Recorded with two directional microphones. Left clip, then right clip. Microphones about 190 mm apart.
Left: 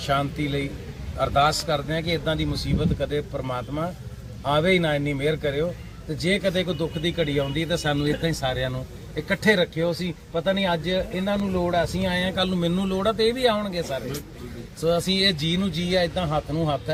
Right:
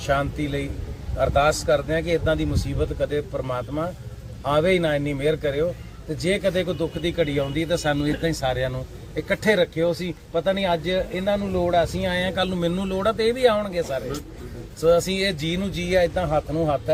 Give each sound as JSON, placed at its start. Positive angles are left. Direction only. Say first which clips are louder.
{"t": 0.1, "sound": "speech", "louder": "right 1 dB", "side_deg": -5}